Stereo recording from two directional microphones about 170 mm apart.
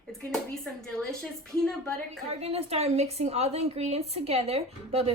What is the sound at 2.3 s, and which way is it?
A woman's voice, 35° right (ahead or behind).